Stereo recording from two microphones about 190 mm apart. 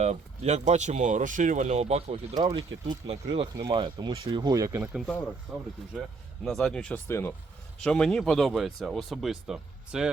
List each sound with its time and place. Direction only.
0.0 s speech: 35° right (ahead or behind)
2.3 s speech: 20° right (ahead or behind)
5.5 s speech: centre (ahead or behind)